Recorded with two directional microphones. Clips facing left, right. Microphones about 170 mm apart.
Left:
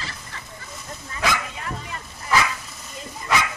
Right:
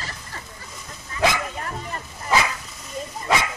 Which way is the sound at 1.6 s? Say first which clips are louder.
Right 2 dB; 40° right (ahead or behind).